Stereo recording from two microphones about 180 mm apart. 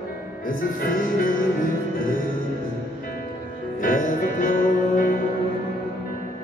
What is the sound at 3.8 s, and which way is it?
Music, 50° left (ahead or behind).